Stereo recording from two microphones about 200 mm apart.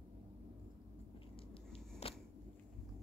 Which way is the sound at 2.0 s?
30° left (ahead or behind).